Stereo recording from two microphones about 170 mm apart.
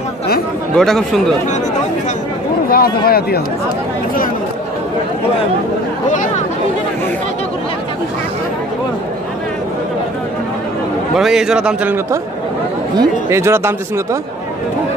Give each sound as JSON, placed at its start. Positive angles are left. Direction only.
{"t": 0.7, "sound": "a man's voice", "side_deg": 5}
{"t": 2.7, "sound": "speech", "side_deg": 60}
{"t": 6.0, "sound": "speech", "side_deg": 50}
{"t": 11.1, "sound": "a man's voice", "side_deg": -5}